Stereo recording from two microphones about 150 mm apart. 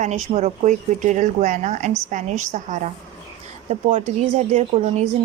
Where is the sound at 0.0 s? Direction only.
50° right (ahead or behind).